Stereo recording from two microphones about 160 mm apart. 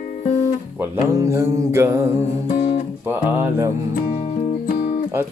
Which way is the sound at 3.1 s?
15° right (ahead or behind).